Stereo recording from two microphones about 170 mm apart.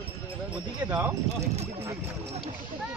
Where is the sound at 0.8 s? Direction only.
25° right (ahead or behind).